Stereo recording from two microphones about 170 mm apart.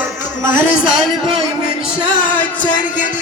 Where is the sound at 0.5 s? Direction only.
50° left (ahead or behind).